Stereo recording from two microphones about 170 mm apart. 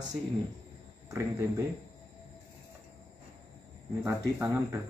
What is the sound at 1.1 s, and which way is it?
Speech, 15° right (ahead or behind).